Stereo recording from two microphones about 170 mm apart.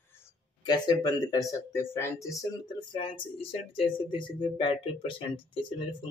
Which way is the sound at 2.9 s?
30° left (ahead or behind).